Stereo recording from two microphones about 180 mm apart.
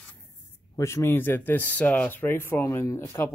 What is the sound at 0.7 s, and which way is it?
Speech, 15° left (ahead or behind).